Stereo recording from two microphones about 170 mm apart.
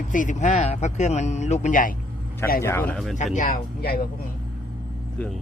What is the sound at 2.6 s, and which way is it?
Speech, 15° left (ahead or behind).